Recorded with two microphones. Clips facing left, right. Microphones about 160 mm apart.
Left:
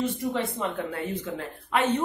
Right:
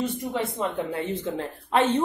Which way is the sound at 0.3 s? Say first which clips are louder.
Right 1 dB; 20° right (ahead or behind).